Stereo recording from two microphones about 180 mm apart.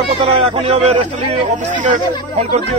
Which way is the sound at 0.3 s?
30° right (ahead or behind).